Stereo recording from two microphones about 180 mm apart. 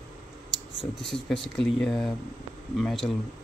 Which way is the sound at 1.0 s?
Centre (ahead or behind).